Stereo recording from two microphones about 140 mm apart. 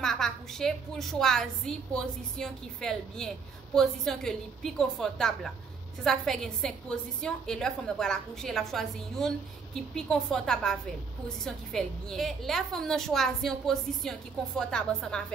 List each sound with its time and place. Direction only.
0.0 s a woman's voice: 5° left (ahead or behind)